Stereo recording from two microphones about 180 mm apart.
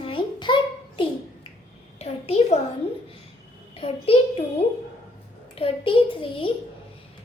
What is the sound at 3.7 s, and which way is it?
Speech, 30° left (ahead or behind).